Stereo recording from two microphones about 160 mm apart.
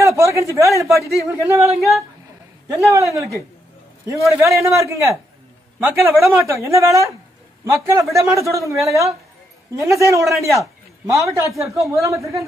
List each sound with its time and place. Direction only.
0.0 s a man's voice: 20° right (ahead or behind)
1.8 s speech: centre (ahead or behind)
2.7 s speech: 20° right (ahead or behind)
4.3 s a man's voice: 20° right (ahead or behind)